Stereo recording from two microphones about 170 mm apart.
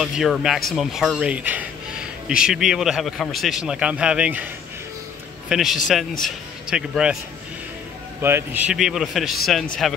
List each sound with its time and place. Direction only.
0.0 s speech: centre (ahead or behind)
5.5 s speech: 5° right (ahead or behind)
8.2 s speech: 15° right (ahead or behind)